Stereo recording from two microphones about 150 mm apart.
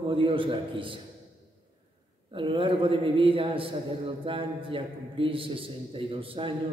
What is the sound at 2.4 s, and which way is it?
A man's voice, 35° right (ahead or behind).